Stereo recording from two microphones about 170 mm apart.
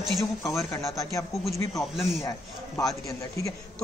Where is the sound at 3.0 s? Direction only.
20° left (ahead or behind).